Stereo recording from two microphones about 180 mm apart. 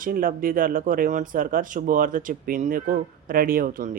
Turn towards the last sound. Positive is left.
turn(degrees=-50)  # may be behind; listen again after turning